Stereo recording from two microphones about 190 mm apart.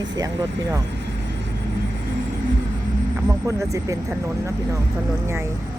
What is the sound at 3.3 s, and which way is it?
Speech, 15° right (ahead or behind).